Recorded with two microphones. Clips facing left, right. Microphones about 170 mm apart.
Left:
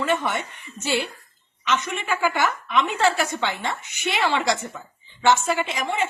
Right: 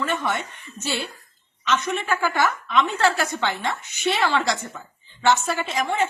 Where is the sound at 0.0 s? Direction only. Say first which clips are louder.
Left 2 dB; 15° left (ahead or behind).